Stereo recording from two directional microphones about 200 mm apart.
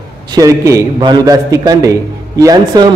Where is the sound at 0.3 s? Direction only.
15° right (ahead or behind).